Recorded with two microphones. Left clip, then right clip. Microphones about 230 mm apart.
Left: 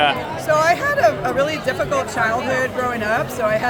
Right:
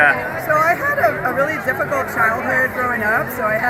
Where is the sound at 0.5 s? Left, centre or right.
Centre.